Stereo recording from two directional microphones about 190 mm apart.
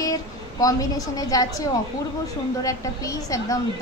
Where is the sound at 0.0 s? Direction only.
20° left (ahead or behind).